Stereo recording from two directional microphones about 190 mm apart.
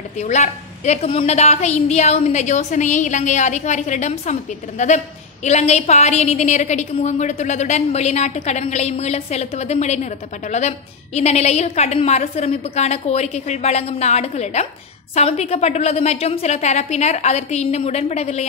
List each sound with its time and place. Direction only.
0.2 s a woman's voice: 35° left (ahead or behind)